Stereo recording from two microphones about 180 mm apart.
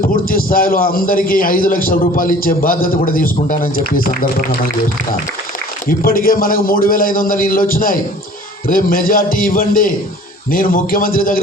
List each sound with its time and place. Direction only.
0.1 s a man's voice: 50° left (ahead or behind)
5.9 s a man's voice: 55° left (ahead or behind)